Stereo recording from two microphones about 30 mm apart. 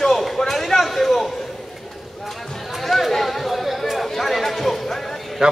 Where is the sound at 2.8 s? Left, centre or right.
Centre.